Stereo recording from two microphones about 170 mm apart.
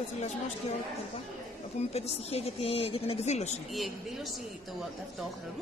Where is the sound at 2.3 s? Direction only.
35° left (ahead or behind).